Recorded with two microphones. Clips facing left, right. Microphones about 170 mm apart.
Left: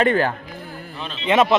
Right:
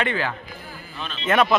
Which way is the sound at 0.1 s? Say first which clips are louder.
Left 7 dB; 50° left (ahead or behind).